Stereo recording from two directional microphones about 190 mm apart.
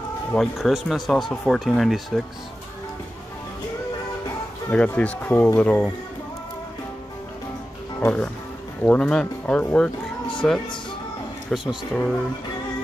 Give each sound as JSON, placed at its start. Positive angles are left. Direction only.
{"t": 0.3, "sound": "speech", "side_deg": 0}
{"t": 4.6, "sound": "speech", "side_deg": 5}
{"t": 8.0, "sound": "speech", "side_deg": 5}